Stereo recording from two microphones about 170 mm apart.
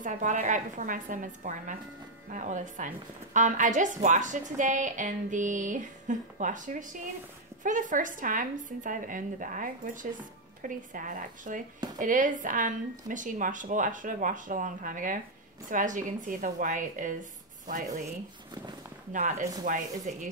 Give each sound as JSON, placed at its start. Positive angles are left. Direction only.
{"t": 0.0, "sound": "a woman's voice", "side_deg": -45}
{"t": 19.1, "sound": "a woman's voice", "side_deg": -50}